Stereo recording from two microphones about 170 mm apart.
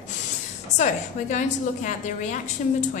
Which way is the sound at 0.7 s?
45° left (ahead or behind).